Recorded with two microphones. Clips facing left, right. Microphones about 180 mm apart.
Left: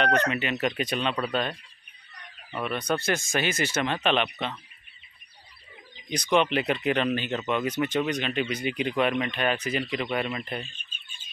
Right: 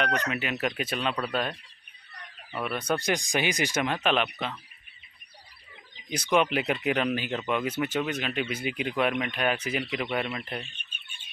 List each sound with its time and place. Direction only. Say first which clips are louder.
0.3 s speech: left 2 dB; 5° right (ahead or behind)
6.3 s speech: left 1 dB; 10° right (ahead or behind)
10.7 s frog: even; 65° right (ahead or behind)